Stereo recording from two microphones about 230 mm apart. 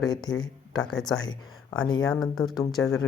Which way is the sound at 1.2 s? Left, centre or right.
Centre.